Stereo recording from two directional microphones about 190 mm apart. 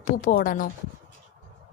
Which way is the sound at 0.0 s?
45° left (ahead or behind).